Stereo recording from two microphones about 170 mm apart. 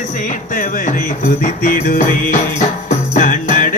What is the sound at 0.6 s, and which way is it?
Music, 50° left (ahead or behind).